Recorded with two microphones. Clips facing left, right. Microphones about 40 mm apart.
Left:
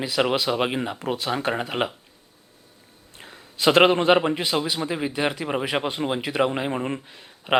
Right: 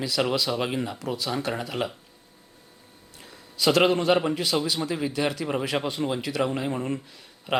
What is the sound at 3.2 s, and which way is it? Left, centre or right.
A man's voice, left.